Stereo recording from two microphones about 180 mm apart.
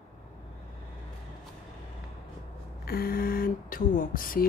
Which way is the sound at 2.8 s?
55° left (ahead or behind).